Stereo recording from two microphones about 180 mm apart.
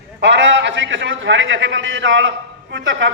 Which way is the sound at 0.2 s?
90° right.